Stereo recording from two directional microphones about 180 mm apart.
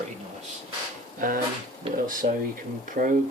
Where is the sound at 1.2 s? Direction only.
50° right (ahead or behind).